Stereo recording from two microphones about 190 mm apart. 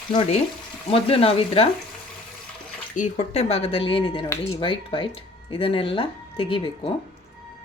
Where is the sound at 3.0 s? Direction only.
35° left (ahead or behind).